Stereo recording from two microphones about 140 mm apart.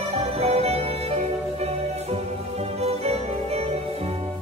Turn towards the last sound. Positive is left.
turn(degrees=-50)  # may be behind; listen again after turning